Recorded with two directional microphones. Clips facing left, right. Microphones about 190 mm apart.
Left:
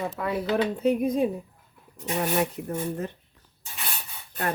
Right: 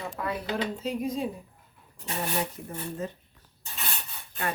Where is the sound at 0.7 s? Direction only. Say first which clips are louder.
Left 7 dB; 60° left (ahead or behind).